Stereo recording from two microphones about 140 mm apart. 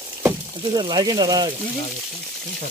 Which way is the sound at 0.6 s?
30° right (ahead or behind).